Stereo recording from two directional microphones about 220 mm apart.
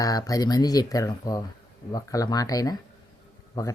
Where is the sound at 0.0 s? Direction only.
15° left (ahead or behind).